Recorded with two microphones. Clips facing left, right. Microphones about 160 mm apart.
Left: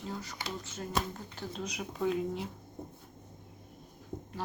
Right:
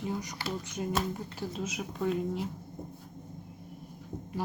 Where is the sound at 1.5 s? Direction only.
5° right (ahead or behind).